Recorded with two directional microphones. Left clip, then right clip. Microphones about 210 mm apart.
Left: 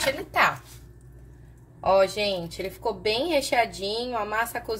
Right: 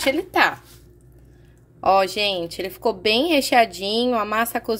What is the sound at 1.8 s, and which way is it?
A woman's voice, 50° right (ahead or behind).